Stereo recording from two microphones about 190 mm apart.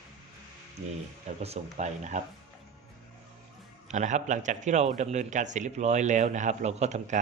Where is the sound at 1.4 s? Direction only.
35° right (ahead or behind).